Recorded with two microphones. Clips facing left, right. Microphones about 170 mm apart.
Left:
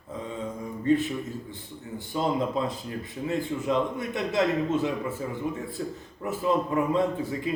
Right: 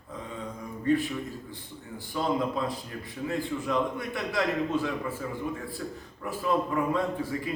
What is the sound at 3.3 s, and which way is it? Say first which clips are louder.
A man's voice: left 3 dB; 20° left (ahead or behind).